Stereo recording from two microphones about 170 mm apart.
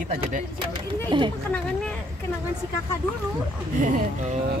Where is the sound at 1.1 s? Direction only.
30° right (ahead or behind).